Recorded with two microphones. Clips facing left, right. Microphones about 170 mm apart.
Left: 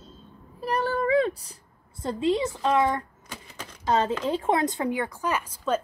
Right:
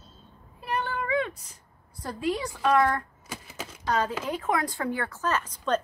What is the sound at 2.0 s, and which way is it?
A woman's voice, 25° left (ahead or behind).